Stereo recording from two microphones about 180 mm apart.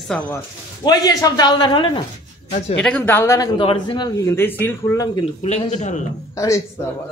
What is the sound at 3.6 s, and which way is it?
Speech, 25° left (ahead or behind).